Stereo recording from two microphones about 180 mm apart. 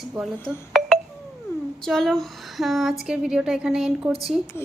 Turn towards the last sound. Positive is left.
turn(degrees=0)  # may be behind; listen again after turning